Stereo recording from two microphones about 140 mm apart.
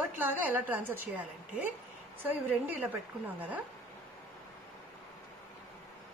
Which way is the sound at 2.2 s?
15° right (ahead or behind).